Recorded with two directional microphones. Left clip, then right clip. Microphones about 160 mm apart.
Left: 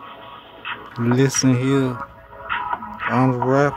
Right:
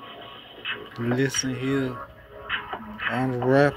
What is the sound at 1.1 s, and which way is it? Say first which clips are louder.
Speech: left 7 dB; 25° left (ahead or behind).